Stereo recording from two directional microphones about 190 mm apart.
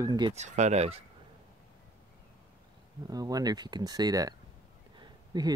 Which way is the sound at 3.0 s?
20° right (ahead or behind).